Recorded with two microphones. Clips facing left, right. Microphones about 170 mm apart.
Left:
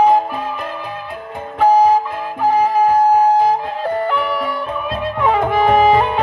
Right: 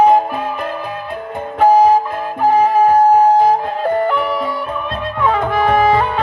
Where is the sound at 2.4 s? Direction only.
55° right (ahead or behind).